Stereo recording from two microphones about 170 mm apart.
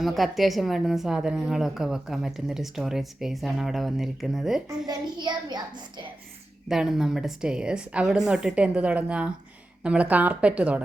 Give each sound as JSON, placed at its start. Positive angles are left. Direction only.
{"t": 0.0, "sound": "a woman's voice", "side_deg": 0}
{"t": 4.9, "sound": "child singing", "side_deg": -25}
{"t": 6.7, "sound": "a woman's voice", "side_deg": 0}